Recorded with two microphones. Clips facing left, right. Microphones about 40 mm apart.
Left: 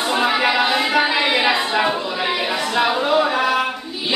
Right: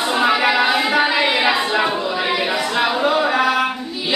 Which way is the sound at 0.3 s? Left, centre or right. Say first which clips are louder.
Right 3 dB; centre.